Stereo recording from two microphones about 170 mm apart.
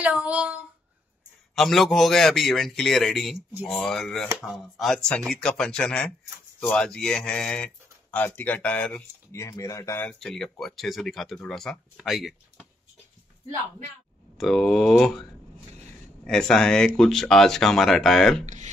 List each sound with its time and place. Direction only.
0.0 s a sound: 10° right (ahead or behind)
1.5 s speech: centre (ahead or behind)
9.4 s speech: 20° left (ahead or behind); by 12.6 s centre (ahead or behind)
14.4 s speech: centre (ahead or behind)
16.3 s speech: 5° left (ahead or behind)
18.4 s speech: 45° right (ahead or behind)